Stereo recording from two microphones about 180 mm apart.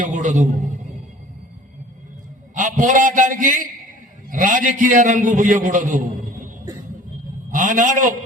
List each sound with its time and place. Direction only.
0.0 s a man's voice: 45° right (ahead or behind)
2.6 s a man's voice: 45° right (ahead or behind)
7.5 s a man's voice: 45° right (ahead or behind)